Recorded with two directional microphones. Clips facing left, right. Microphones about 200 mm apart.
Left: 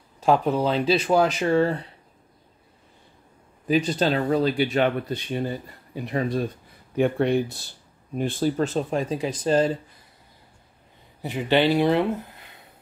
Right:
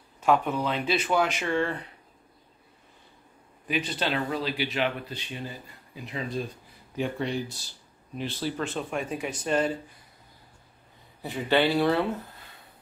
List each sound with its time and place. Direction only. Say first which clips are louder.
0.2 s speech: left 4 dB; 35° left (ahead or behind)
3.6 s speech: left 8 dB; 40° left (ahead or behind)
11.2 s speech: left 3 dB; 20° left (ahead or behind)